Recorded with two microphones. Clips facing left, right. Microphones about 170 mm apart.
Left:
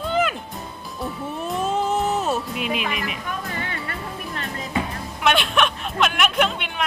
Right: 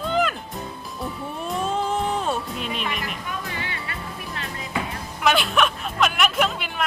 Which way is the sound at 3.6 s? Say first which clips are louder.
Left 3 dB; 45° left (ahead or behind).